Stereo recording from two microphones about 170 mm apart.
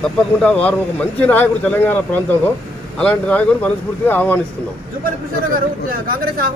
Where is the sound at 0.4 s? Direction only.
10° left (ahead or behind).